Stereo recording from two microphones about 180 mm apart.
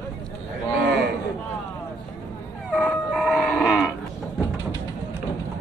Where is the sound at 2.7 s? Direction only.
Centre (ahead or behind).